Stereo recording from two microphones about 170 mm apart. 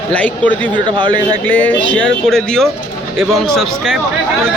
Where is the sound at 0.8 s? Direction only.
30° right (ahead or behind).